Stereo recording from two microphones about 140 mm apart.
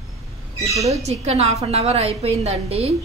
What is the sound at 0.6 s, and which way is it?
Speech, 25° right (ahead or behind).